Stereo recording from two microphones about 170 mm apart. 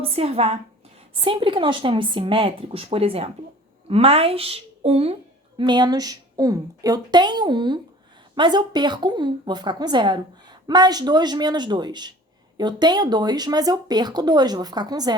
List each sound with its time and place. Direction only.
0.0 s speech: 35° right (ahead or behind)
5.5 s a woman's voice: 25° right (ahead or behind)